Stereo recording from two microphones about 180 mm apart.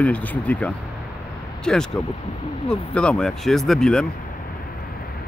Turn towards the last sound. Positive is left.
turn(degrees=5)  # may be behind; listen again after turning